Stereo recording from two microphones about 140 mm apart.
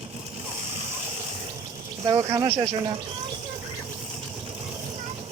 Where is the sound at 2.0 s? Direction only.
25° right (ahead or behind).